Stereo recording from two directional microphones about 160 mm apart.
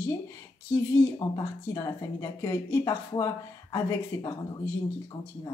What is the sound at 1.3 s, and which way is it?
Speech, 20° left (ahead or behind).